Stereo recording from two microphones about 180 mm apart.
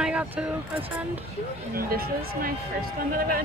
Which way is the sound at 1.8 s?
55° right (ahead or behind).